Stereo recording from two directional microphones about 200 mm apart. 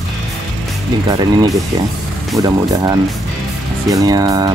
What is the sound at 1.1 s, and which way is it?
Speech, 20° right (ahead or behind).